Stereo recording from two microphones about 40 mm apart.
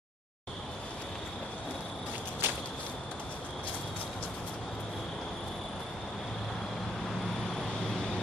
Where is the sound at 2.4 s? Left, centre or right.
Right.